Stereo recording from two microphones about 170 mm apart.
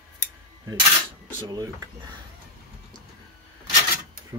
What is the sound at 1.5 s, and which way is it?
Speech, 20° right (ahead or behind).